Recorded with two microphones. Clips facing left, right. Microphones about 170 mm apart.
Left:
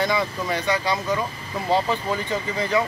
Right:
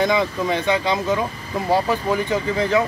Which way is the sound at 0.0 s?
20° right (ahead or behind).